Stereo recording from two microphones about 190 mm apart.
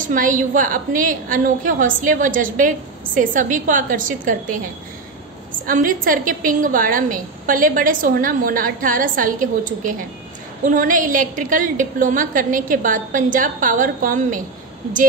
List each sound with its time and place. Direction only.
0.0 s a woman's voice: 45° right (ahead or behind)
5.7 s a woman's voice: 45° right (ahead or behind)